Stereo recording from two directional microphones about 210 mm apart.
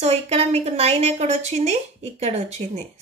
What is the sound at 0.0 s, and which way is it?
A woman's voice, 30° right (ahead or behind).